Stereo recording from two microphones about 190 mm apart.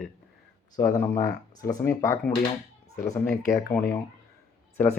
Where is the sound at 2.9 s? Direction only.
40° left (ahead or behind).